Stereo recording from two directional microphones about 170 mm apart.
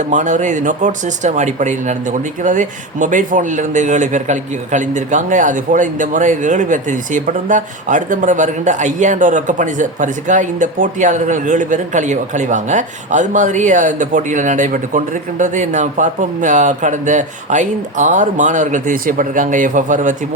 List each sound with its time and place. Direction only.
0.0 s speech: 45° right (ahead or behind)